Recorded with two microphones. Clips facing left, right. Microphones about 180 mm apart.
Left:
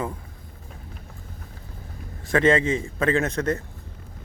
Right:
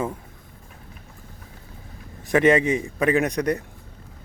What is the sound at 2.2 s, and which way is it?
Speech, 20° right (ahead or behind).